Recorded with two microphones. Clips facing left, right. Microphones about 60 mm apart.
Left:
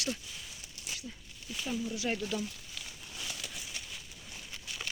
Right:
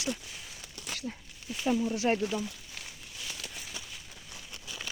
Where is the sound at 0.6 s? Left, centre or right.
Right.